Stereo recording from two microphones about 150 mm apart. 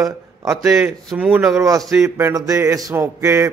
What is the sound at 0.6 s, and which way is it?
Speech, 5° right (ahead or behind).